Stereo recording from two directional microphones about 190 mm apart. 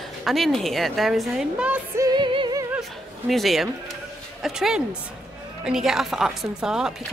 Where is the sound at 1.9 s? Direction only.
20° right (ahead or behind).